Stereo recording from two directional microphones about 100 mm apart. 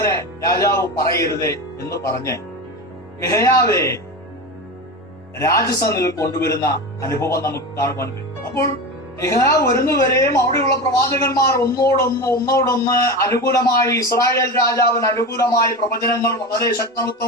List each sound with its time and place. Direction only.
0.0 s speech: 35° left (ahead or behind)
5.4 s speech: 30° left (ahead or behind)